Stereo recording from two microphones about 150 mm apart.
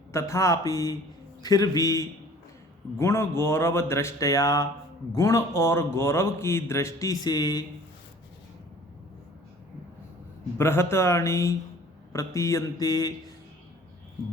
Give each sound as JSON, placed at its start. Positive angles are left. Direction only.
{"t": 0.1, "sound": "a man's voice", "side_deg": 20}
{"t": 10.6, "sound": "a man's voice", "side_deg": 15}